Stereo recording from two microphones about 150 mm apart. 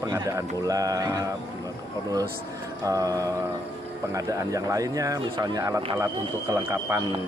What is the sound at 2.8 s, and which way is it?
Speech, 25° right (ahead or behind).